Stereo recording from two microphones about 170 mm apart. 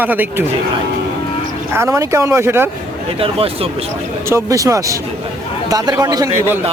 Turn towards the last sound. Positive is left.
turn(degrees=-20)  # may be behind; listen again after turning